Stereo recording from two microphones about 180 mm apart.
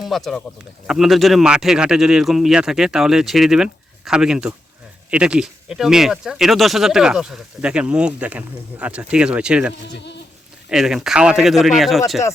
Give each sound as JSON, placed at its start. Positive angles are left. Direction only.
{"t": 0.0, "sound": "speech", "side_deg": 0}
{"t": 9.8, "sound": "speech", "side_deg": 75}
{"t": 10.7, "sound": "speech", "side_deg": -5}